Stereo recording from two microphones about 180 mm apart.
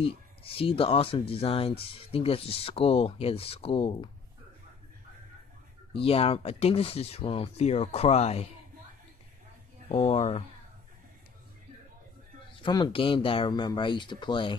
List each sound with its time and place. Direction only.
0.0 s speech: 30° left (ahead or behind)
5.9 s speech: 30° left (ahead or behind)
9.8 s speech: 35° left (ahead or behind)
12.5 s speech: 25° left (ahead or behind)